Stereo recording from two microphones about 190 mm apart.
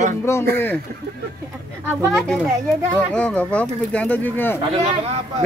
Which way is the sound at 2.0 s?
Centre (ahead or behind).